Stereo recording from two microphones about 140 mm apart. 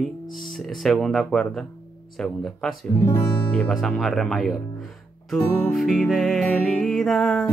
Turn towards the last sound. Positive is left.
turn(degrees=0)  # may be behind; listen again after turning